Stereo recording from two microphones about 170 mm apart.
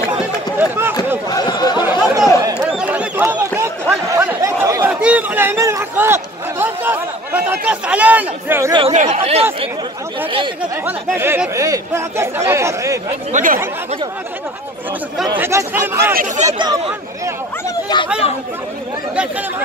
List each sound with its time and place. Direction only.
0.6 s run: 10° right (ahead or behind)
1.3 s speech: 25° left (ahead or behind)
1.8 s chatter: 10° right (ahead or behind)
2.7 s a sound: 5° right (ahead or behind)
5.0 s a man's voice: 10° right (ahead or behind)
8.9 s speech: 40° right (ahead or behind)
11.1 s speech: 15° right (ahead or behind)
13.3 s speech: 50° right (ahead or behind)
15.3 s speech: 15° right (ahead or behind)
17.9 s speech: 25° left (ahead or behind)